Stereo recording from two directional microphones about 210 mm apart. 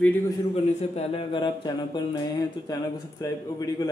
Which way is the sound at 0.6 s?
30° left (ahead or behind).